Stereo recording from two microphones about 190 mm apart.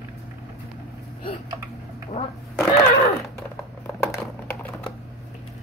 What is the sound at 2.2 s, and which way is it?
Fart, 30° left (ahead or behind).